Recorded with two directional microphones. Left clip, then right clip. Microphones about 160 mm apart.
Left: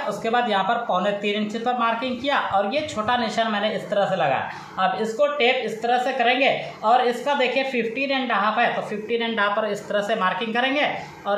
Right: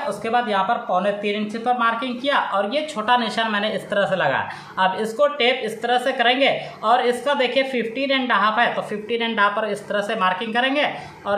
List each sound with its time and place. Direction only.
0.2 s a woman's voice: 20° right (ahead or behind)